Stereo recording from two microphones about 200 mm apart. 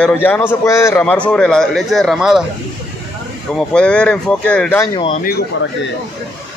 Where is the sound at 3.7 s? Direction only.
5° left (ahead or behind).